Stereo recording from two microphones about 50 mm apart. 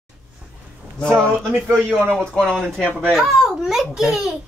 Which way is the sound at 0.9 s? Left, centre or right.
Centre.